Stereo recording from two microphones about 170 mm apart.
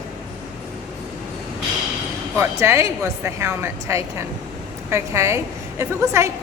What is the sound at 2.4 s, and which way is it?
A woman's voice, 15° right (ahead or behind).